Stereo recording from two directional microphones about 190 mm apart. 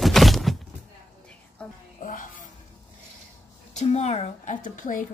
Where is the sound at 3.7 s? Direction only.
35° left (ahead or behind).